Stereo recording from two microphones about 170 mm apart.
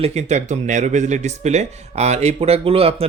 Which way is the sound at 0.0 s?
40° right (ahead or behind).